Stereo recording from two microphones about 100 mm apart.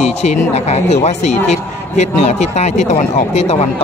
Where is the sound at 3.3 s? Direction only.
90° left.